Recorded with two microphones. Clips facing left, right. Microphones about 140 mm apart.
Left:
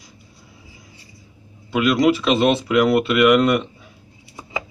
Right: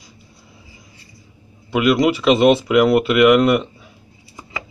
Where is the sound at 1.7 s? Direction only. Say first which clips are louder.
Right 1 dB; 10° right (ahead or behind).